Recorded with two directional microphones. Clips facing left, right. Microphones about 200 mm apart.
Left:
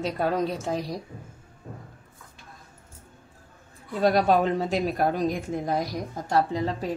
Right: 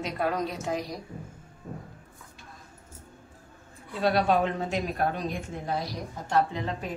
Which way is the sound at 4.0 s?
40° left (ahead or behind).